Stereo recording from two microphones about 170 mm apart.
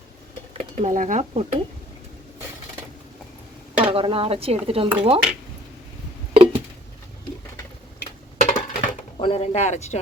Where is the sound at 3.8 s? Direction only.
30° right (ahead or behind).